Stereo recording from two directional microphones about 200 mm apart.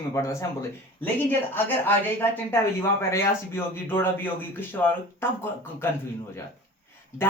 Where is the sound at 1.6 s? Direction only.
10° left (ahead or behind).